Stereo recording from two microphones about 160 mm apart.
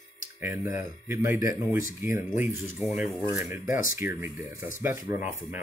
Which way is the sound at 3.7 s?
55° left (ahead or behind).